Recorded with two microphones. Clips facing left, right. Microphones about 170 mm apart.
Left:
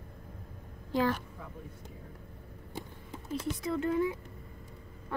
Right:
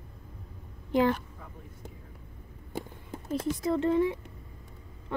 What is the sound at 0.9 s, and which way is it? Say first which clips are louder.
Speech: right 4 dB; 20° right (ahead or behind).